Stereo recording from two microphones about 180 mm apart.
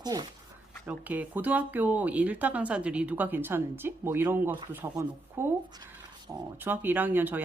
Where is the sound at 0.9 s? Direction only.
10° right (ahead or behind).